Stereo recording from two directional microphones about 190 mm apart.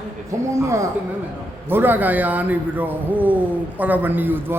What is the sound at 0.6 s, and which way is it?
A man's voice, 15° right (ahead or behind).